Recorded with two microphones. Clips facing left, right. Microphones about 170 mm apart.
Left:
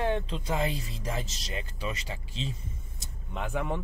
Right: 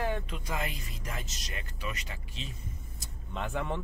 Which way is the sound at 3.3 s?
10° left (ahead or behind).